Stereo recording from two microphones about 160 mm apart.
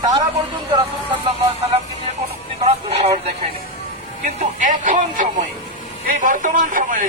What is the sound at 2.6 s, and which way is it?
Speech, 40° right (ahead or behind).